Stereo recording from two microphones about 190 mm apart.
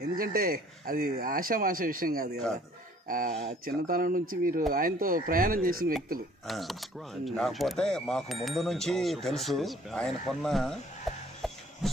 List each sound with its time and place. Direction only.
0.0 s speech: 50° right (ahead or behind)
6.4 s speech: centre (ahead or behind)
11.4 s a sound: centre (ahead or behind)